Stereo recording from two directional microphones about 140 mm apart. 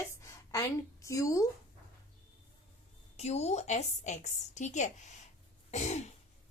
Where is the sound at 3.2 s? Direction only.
50° left (ahead or behind).